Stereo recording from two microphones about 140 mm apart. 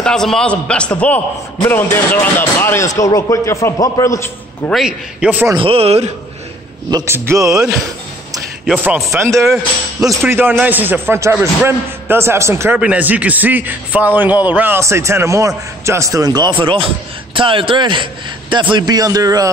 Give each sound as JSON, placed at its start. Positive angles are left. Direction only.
{"t": 0.0, "sound": "a man's voice", "side_deg": 5}
{"t": 4.6, "sound": "a man's voice", "side_deg": 0}
{"t": 5.6, "sound": "a man's voice", "side_deg": -45}
{"t": 7.1, "sound": "a man's voice", "side_deg": -20}
{"t": 9.1, "sound": "a man's voice", "side_deg": -20}